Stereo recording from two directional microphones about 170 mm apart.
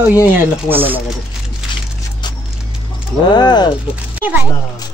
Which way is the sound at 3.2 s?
25° left (ahead or behind).